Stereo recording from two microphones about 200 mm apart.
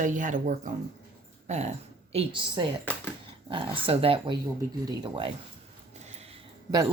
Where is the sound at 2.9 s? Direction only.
5° left (ahead or behind).